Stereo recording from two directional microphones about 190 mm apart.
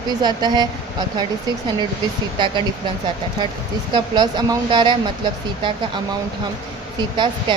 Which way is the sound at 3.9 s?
25° right (ahead or behind).